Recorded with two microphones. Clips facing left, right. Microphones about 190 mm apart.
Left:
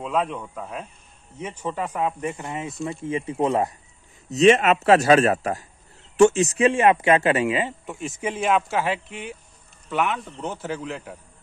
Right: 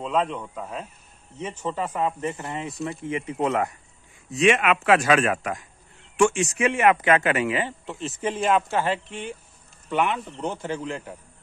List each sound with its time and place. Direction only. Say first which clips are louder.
0.0 s speech: even; 5° left (ahead or behind)
1.6 s speech: even; 10° left (ahead or behind)
2.9 s speech: left 2 dB; 25° left (ahead or behind)
4.3 s speech: left 4 dB; 40° left (ahead or behind)
8.0 s speech: even; 10° left (ahead or behind)